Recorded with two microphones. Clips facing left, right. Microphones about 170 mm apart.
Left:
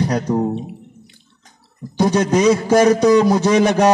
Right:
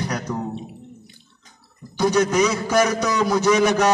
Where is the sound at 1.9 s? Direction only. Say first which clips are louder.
Left 3 dB; 30° left (ahead or behind).